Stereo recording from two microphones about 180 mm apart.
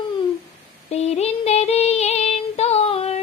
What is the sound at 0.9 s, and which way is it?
Music, 35° left (ahead or behind).